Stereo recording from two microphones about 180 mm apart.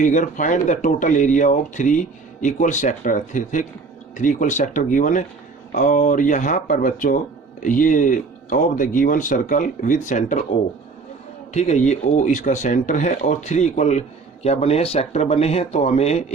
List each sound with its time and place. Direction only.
0.0 s speech: 45° left (ahead or behind)
11.5 s speech: 40° left (ahead or behind)